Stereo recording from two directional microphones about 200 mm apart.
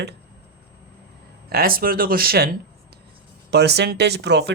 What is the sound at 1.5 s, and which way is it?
Speech, 45° right (ahead or behind).